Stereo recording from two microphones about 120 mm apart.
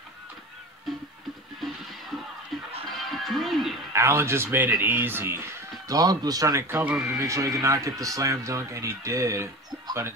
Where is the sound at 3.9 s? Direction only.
20° right (ahead or behind).